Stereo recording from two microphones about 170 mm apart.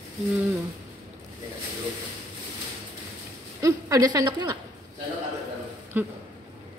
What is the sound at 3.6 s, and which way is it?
A woman's voice, 20° right (ahead or behind).